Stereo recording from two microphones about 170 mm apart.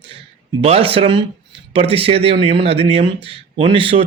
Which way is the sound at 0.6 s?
35° right (ahead or behind).